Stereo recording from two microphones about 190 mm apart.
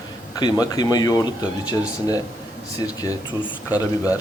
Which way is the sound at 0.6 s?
20° left (ahead or behind).